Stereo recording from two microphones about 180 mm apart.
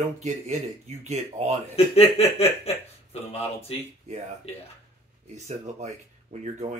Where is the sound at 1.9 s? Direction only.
35° left (ahead or behind).